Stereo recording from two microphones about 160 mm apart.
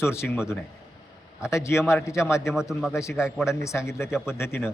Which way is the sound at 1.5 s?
15° left (ahead or behind).